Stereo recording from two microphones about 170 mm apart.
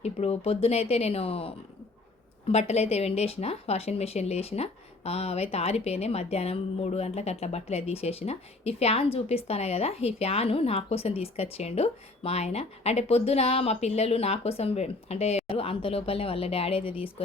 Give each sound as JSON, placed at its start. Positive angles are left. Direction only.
{"t": 0.0, "sound": "speech", "side_deg": 35}